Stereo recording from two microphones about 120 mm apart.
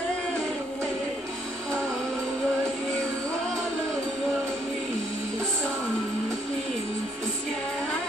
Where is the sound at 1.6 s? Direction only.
5° left (ahead or behind).